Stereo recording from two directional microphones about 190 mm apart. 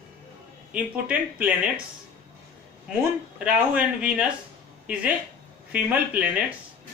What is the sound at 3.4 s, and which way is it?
Speech, 5° right (ahead or behind).